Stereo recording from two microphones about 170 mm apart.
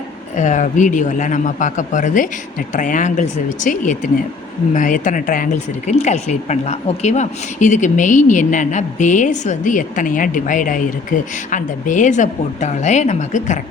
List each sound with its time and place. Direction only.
0.3 s speech: 45° left (ahead or behind)